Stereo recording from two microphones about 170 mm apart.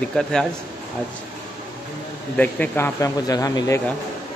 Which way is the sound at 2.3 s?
10° left (ahead or behind).